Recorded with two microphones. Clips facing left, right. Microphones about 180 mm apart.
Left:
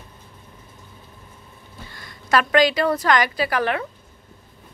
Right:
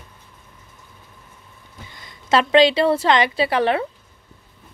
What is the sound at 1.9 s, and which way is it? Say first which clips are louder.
A woman's voice: right 2 dB; 20° right (ahead or behind).